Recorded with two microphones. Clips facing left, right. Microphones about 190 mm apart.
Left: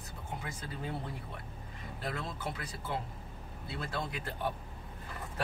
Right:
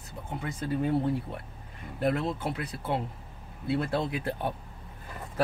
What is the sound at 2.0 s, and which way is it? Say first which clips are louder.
Speech: right 11 dB; 60° right (ahead or behind).